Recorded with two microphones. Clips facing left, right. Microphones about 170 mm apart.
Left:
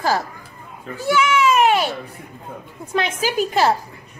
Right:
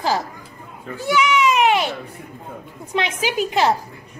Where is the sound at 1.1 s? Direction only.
15° right (ahead or behind).